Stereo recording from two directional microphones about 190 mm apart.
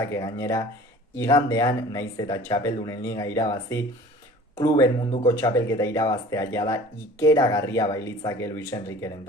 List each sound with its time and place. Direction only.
0.0 s speech: 15° left (ahead or behind)